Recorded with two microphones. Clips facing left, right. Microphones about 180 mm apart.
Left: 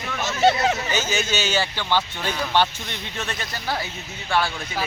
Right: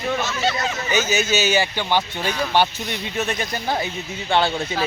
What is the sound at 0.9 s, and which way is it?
Speech, 10° right (ahead or behind).